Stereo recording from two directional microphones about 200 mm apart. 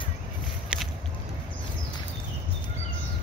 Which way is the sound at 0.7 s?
5° right (ahead or behind).